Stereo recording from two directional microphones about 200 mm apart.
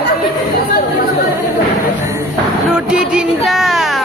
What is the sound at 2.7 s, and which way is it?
Speech, 5° right (ahead or behind).